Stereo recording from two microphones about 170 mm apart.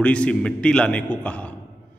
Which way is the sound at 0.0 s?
5° left (ahead or behind).